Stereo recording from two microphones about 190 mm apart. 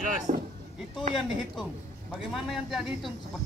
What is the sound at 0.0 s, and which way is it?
Speech, 40° right (ahead or behind).